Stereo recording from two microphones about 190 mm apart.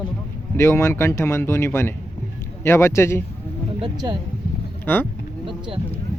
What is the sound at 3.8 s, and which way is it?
Speech, 25° right (ahead or behind).